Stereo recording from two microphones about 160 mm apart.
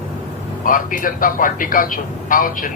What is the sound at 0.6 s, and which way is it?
Speech, 55° left (ahead or behind).